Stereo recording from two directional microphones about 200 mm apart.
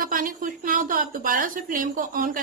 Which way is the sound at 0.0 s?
45° right (ahead or behind).